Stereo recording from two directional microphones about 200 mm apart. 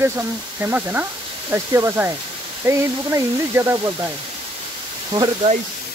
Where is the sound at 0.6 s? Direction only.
10° right (ahead or behind).